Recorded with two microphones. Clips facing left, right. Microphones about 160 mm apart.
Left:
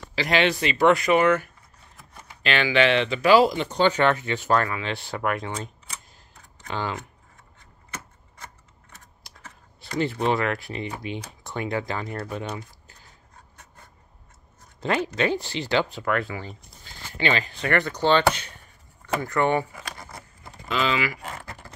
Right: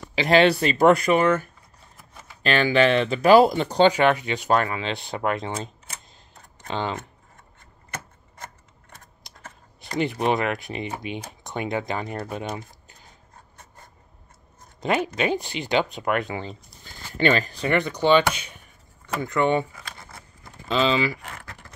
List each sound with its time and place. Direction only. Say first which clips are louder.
0.3 s speech: right 5 dB; 35° right (ahead or behind)
3.8 s speech: right 3 dB; 15° right (ahead or behind)
6.7 s speech: right 2 dB; 25° right (ahead or behind)
9.3 s a sound: even; 20° right (ahead or behind)
9.9 s speech: right 1 dB; 15° right (ahead or behind)
12.5 s a sound: right 1 dB; 20° right (ahead or behind)
14.8 s speech: right 1 dB; 15° right (ahead or behind)
17.1 s speech: right 4 dB; 45° right (ahead or behind)
17.6 s speech: right 2 dB; 15° right (ahead or behind)
20.6 s speech: right 3 dB; 30° right (ahead or behind)